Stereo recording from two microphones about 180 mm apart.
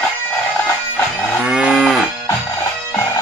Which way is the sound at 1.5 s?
Centre (ahead or behind).